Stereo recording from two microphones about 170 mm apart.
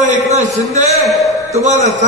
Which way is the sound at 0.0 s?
45° right (ahead or behind).